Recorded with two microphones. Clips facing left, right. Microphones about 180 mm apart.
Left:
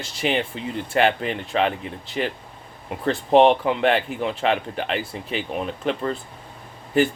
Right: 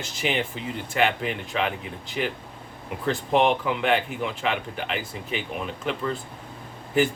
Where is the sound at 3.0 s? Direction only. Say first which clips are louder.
Left 6 dB; 35° left (ahead or behind).